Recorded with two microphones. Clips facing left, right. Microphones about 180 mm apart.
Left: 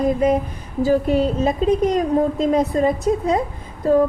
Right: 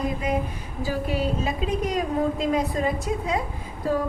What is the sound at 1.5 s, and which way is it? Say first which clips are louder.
A woman's voice: left 9 dB; 45° left (ahead or behind).